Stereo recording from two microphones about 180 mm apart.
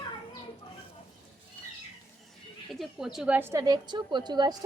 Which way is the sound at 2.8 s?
Centre (ahead or behind).